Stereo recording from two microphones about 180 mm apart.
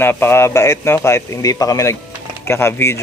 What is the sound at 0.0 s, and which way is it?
A man's voice, 10° left (ahead or behind).